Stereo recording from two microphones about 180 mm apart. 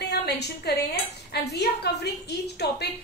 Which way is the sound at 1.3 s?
65° left (ahead or behind).